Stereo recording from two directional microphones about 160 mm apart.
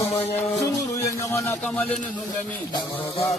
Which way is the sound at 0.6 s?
20° left (ahead or behind).